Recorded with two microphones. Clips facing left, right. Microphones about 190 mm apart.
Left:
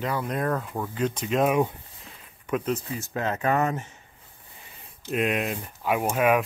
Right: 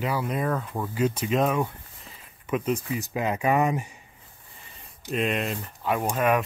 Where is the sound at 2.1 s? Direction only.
5° right (ahead or behind).